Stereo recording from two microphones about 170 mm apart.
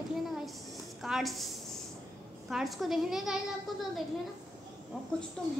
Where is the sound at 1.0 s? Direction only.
Centre (ahead or behind).